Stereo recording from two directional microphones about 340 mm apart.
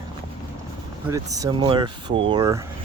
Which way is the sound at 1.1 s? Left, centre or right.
Centre.